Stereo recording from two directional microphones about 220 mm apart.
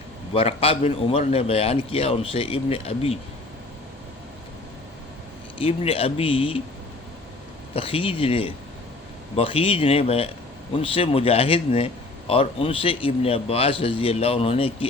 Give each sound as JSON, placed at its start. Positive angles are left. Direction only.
{"t": 0.3, "sound": "a man's voice", "side_deg": 25}
{"t": 5.5, "sound": "a man's voice", "side_deg": 25}
{"t": 7.8, "sound": "a man's voice", "side_deg": 25}